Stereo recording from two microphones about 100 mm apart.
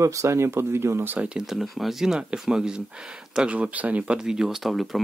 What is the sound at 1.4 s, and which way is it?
Speech, centre (ahead or behind).